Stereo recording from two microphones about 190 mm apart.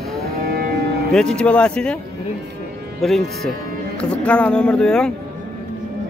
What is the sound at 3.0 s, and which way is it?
Speech, centre (ahead or behind).